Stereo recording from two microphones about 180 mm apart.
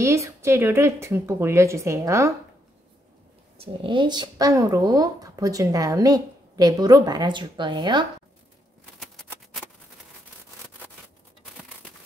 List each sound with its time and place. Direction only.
0.0 s a woman's voice: 15° right (ahead or behind)
3.5 s speech: 30° right (ahead or behind)
9.0 s typewriter: centre (ahead or behind)